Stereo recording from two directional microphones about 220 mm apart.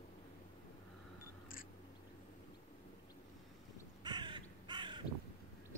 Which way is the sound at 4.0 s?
20° right (ahead or behind).